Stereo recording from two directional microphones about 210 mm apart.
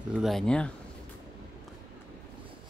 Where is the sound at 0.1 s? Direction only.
Centre (ahead or behind).